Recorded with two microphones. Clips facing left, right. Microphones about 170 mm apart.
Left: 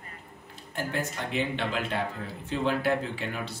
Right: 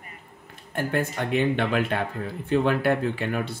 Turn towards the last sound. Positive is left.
turn(degrees=-55)  # may be behind; listen again after turning